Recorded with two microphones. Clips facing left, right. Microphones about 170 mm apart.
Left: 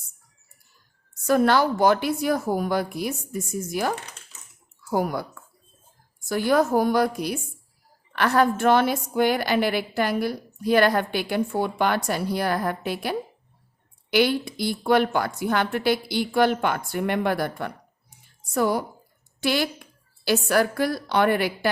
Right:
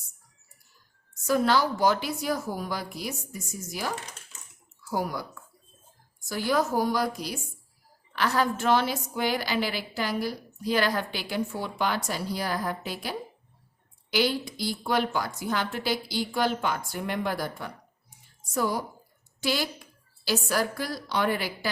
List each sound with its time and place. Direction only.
1.3 s a woman's voice: 55° left (ahead or behind)